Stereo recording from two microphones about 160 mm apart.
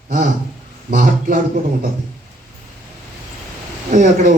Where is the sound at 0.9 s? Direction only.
55° right (ahead or behind).